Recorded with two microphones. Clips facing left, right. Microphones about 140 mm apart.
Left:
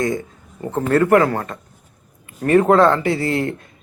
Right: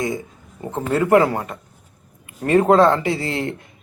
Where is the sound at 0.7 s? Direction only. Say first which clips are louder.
Left 3 dB; 5° right (ahead or behind).